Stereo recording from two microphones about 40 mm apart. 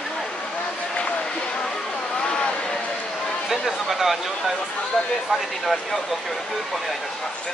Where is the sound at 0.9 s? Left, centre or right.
Left.